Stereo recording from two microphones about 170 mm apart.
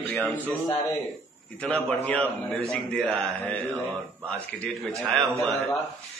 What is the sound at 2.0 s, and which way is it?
A man's voice, 10° left (ahead or behind).